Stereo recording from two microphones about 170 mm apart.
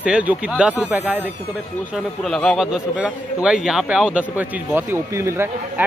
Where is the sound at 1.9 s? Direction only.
Centre (ahead or behind).